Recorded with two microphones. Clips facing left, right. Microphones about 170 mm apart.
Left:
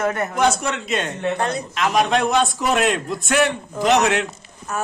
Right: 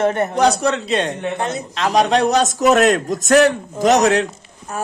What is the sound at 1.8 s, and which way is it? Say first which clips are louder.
A man's voice: right 3 dB; 35° right (ahead or behind).